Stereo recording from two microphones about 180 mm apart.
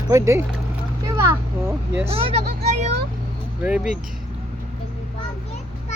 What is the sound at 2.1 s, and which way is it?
Speech, 30° right (ahead or behind).